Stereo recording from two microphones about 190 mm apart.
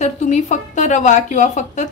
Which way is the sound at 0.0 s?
40° left (ahead or behind).